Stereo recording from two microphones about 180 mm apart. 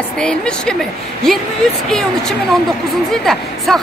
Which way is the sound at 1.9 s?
5° left (ahead or behind).